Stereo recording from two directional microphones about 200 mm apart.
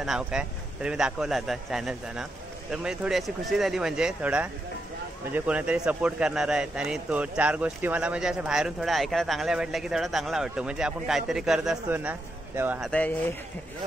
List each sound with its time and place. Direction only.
0.0 s speech: centre (ahead or behind)
12.9 s speech: 5° left (ahead or behind)